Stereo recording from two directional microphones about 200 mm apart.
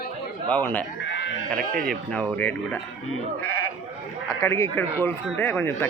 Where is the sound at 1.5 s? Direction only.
45° right (ahead or behind).